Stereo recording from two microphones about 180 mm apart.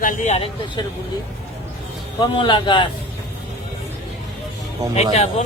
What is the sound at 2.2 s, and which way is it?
Speech, 25° left (ahead or behind).